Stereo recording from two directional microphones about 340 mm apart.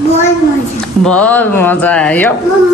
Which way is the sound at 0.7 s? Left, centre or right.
Centre.